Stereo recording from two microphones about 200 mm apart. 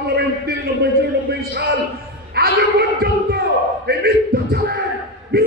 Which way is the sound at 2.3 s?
55° right (ahead or behind).